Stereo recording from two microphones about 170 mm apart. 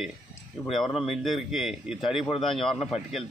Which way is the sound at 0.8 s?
35° left (ahead or behind).